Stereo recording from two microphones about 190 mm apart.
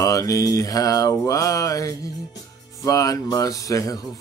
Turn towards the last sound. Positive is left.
turn(degrees=20)  # may be behind; listen again after turning